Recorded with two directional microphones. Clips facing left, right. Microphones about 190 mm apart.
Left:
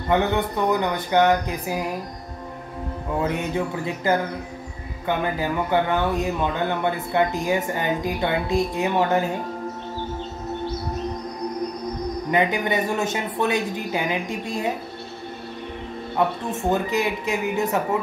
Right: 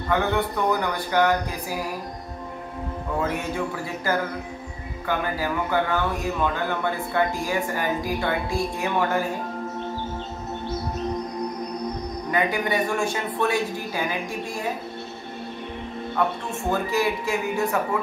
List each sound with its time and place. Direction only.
0.1 s speech: 20° left (ahead or behind)
3.2 s speech: 20° left (ahead or behind)
12.3 s speech: 20° left (ahead or behind)
16.2 s speech: 20° left (ahead or behind)